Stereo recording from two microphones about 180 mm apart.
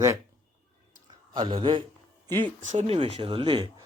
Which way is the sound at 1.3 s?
30° right (ahead or behind).